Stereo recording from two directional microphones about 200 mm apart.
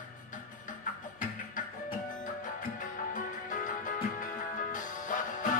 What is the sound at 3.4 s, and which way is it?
Music, 40° left (ahead or behind).